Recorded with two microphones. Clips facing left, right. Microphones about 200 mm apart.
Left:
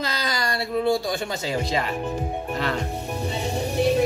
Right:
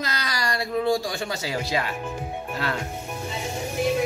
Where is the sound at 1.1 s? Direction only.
10° right (ahead or behind).